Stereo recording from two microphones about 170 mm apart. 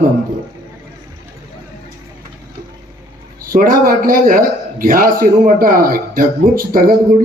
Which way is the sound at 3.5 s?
55° right (ahead or behind).